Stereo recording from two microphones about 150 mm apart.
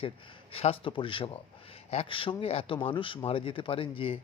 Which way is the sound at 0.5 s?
40° left (ahead or behind).